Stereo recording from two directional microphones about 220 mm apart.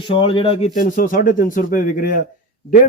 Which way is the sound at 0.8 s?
40° left (ahead or behind).